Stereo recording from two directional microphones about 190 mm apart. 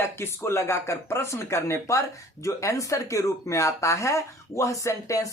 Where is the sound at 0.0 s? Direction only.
15° left (ahead or behind).